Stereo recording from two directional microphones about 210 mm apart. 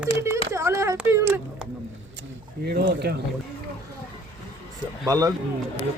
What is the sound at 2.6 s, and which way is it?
Speech, 50° right (ahead or behind).